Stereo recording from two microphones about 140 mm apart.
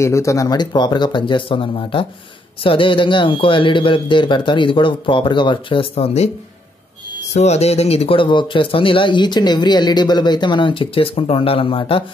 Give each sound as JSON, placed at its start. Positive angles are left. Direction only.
{"t": 0.0, "sound": "speech", "side_deg": 20}
{"t": 7.3, "sound": "speech", "side_deg": 50}